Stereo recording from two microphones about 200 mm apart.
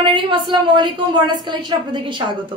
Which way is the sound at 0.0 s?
25° right (ahead or behind).